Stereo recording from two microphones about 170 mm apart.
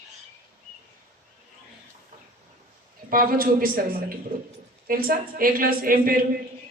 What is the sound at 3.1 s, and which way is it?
Speech, 55° right (ahead or behind).